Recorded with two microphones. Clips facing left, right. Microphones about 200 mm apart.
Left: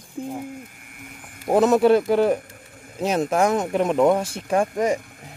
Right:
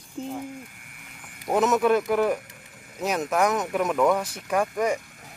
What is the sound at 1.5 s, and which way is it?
Speech, 30° left (ahead or behind).